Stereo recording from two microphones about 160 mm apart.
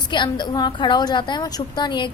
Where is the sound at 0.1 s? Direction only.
30° left (ahead or behind).